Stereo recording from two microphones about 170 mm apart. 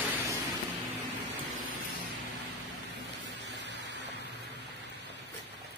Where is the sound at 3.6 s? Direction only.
90° right.